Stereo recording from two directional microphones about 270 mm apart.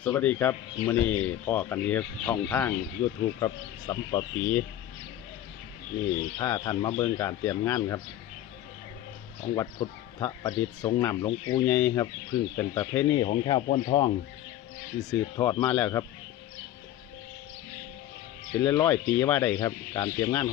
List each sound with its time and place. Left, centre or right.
0.0 s speech: centre
6.4 s speech: centre
9.6 s speech: centre
11.7 s speech: centre
13.1 s speech: left
18.6 s speech: centre